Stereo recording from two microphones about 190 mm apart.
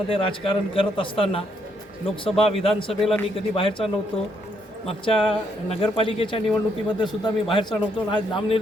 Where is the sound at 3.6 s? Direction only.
30° left (ahead or behind).